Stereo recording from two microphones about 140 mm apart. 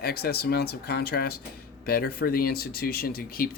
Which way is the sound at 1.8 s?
90° left.